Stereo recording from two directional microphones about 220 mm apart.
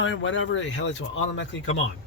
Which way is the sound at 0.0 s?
60° left (ahead or behind).